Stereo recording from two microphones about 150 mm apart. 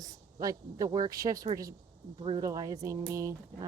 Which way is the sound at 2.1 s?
35° right (ahead or behind).